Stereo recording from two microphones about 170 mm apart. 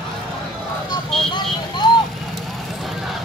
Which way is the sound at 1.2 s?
25° left (ahead or behind).